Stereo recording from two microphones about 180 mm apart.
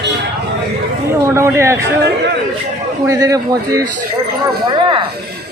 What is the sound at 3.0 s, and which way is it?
A man's voice, 20° right (ahead or behind).